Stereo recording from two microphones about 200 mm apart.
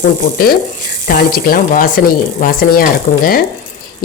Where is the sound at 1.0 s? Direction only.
45° left (ahead or behind).